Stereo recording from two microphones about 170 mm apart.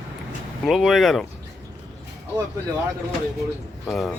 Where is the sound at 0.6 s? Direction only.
Centre (ahead or behind).